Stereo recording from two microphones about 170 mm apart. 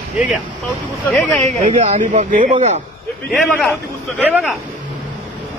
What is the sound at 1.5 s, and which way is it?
A man's voice, 40° right (ahead or behind).